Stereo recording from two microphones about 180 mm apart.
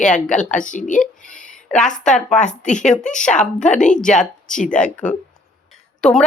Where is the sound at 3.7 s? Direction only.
45° left (ahead or behind).